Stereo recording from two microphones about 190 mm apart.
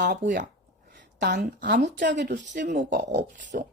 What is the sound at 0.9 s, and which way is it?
A woman's voice, 60° right (ahead or behind).